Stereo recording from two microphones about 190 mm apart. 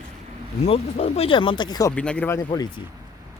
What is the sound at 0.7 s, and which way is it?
Speech, 35° left (ahead or behind).